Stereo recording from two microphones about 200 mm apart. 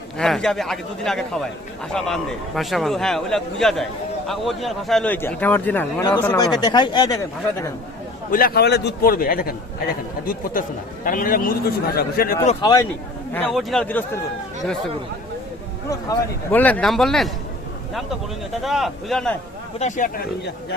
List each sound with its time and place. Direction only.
0.2 s a man's voice: 5° left (ahead or behind)
8.3 s a man's voice: 45° left (ahead or behind)
11.0 s a man's voice: 45° left (ahead or behind)
12.4 s speech: 20° left (ahead or behind)
13.3 s a man's voice: 5° left (ahead or behind)
15.9 s a man's voice: 10° left (ahead or behind)
18.6 s a man's voice: centre (ahead or behind)
19.8 s speech: 40° left (ahead or behind)